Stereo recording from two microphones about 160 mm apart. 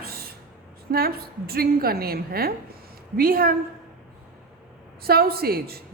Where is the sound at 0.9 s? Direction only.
70° right (ahead or behind).